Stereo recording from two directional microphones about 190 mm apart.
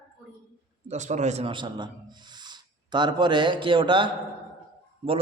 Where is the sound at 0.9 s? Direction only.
40° right (ahead or behind).